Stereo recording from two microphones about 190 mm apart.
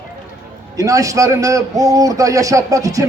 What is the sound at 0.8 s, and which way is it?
A man's voice, 15° right (ahead or behind).